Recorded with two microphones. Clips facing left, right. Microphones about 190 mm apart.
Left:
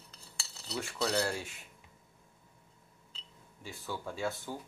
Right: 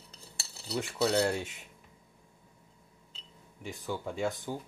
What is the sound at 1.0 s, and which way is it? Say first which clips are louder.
Speech: right 5 dB; 25° right (ahead or behind).